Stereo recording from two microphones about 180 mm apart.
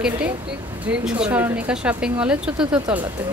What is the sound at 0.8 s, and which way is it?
Speech, 5° right (ahead or behind).